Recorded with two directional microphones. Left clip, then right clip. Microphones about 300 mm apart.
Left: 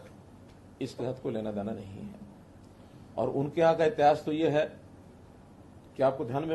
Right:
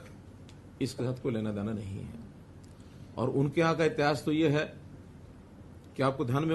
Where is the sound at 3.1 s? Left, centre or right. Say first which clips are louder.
Even; right.